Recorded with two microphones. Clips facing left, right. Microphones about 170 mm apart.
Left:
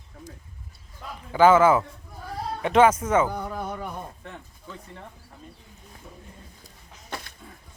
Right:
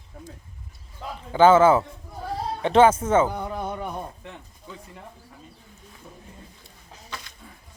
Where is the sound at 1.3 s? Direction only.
30° right (ahead or behind).